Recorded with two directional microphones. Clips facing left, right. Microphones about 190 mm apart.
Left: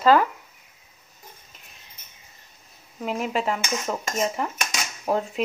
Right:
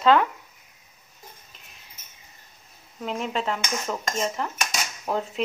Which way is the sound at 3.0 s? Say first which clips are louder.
Left 2 dB; 5° left (ahead or behind).